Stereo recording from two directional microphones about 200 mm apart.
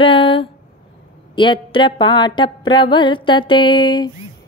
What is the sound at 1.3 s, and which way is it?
Mantra, 25° left (ahead or behind).